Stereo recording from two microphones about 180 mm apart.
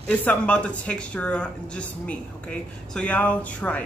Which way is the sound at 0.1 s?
10° left (ahead or behind).